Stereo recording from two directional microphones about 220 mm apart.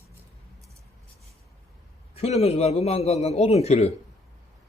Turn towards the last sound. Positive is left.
turn(degrees=30)  # may be behind; listen again after turning